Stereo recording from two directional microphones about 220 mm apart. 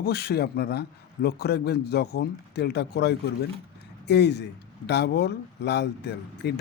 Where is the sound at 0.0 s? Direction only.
45° left (ahead or behind).